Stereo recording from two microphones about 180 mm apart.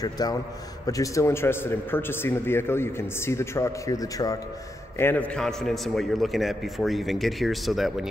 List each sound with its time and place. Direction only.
0.0 s a man's voice: 20° left (ahead or behind); by 8.1 s centre (ahead or behind)